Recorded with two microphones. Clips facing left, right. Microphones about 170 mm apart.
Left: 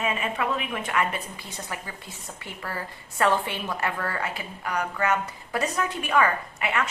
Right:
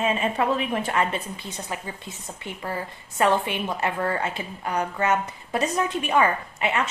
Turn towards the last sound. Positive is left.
turn(degrees=-25)  # may be behind; listen again after turning